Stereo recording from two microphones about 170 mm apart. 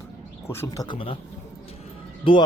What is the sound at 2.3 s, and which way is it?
Speech, 30° left (ahead or behind).